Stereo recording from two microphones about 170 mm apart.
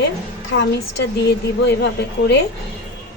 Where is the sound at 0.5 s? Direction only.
90° left.